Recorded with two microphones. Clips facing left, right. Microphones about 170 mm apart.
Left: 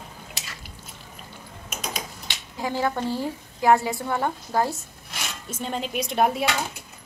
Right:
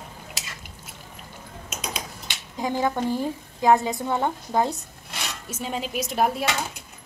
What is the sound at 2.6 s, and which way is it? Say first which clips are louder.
A woman's voice: right 1 dB; 15° right (ahead or behind).